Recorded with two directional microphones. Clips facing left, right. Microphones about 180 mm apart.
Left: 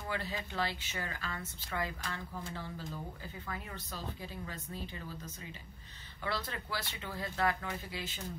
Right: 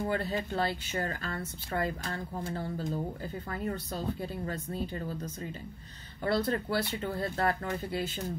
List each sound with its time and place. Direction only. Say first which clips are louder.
0.0 s speech: right 8 dB; 45° right (ahead or behind)
4.2 s speech: right 8 dB; 50° right (ahead or behind)
6.2 s speech: right 10 dB; 45° right (ahead or behind)